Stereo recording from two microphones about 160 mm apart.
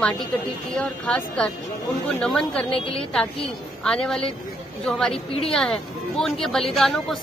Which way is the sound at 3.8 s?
5° left (ahead or behind).